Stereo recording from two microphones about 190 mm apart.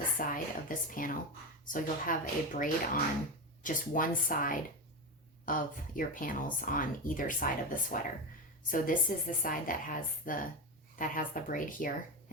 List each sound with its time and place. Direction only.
0.2 s speech: 45° left (ahead or behind)